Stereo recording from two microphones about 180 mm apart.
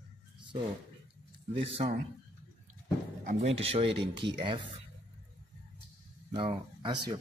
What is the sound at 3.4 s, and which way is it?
Speech, 35° right (ahead or behind).